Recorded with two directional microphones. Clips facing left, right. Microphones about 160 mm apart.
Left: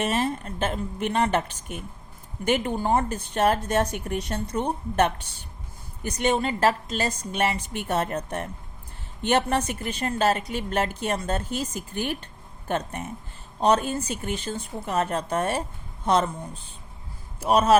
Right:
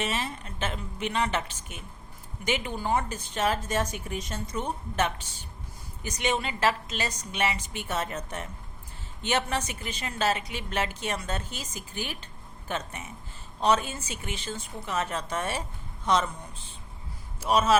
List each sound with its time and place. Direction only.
0.1 s a woman's voice: 50° left (ahead or behind)
6.0 s a woman's voice: 55° left (ahead or behind)
6.3 s a woman's voice: 45° left (ahead or behind)
13.7 s speech: 40° left (ahead or behind)
14.1 s a woman's voice: 55° left (ahead or behind)
17.4 s a woman's voice: 55° left (ahead or behind)